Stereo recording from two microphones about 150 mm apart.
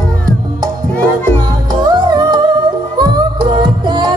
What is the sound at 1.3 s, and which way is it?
Music, 30° right (ahead or behind).